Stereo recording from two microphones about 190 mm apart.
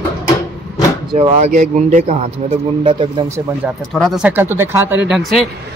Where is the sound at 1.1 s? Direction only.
30° right (ahead or behind).